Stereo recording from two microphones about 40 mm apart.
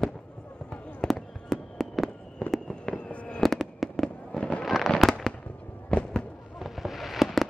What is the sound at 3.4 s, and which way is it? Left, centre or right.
Fireworks, centre.